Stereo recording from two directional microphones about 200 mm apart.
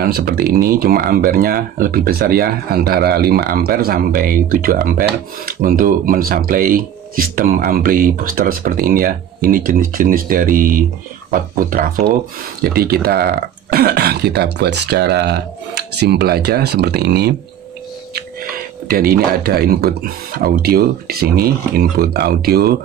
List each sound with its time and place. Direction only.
0.0 s speech: 50° right (ahead or behind)
18.9 s speech: 50° right (ahead or behind)